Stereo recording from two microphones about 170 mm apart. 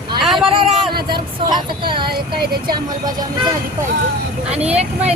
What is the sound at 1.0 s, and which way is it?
Speech, 25° right (ahead or behind).